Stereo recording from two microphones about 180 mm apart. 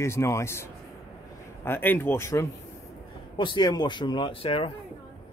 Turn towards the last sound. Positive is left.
turn(degrees=30)  # may be behind; listen again after turning